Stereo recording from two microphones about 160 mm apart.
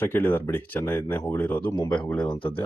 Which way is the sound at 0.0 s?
10° left (ahead or behind).